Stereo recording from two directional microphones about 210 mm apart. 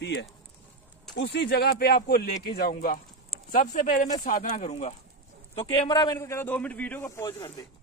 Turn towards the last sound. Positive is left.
turn(degrees=15)  # may be behind; listen again after turning